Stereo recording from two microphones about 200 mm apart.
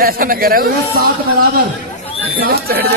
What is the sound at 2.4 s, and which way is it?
Speech, 50° right (ahead or behind).